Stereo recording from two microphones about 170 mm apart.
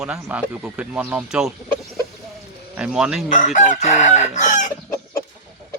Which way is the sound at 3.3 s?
50° left (ahead or behind).